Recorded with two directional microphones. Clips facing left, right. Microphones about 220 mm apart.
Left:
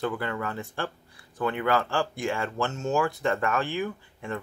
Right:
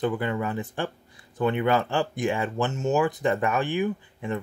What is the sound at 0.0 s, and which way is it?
Speech, 20° right (ahead or behind).